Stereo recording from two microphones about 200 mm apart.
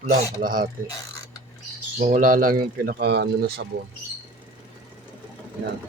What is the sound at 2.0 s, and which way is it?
Speech, 40° right (ahead or behind).